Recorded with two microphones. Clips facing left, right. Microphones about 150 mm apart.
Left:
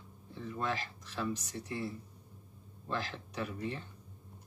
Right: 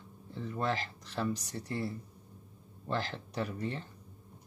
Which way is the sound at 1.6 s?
40° right (ahead or behind).